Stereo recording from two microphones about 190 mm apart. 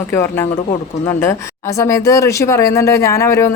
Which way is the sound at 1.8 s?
15° left (ahead or behind).